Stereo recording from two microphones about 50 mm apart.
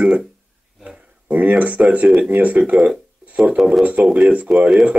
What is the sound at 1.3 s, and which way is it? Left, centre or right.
Speech, right.